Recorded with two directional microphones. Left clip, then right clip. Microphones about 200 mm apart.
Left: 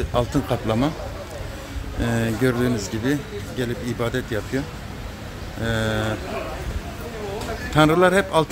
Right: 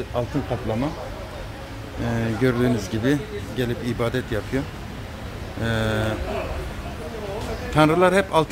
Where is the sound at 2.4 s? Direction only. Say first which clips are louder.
Right 2 dB; centre (ahead or behind).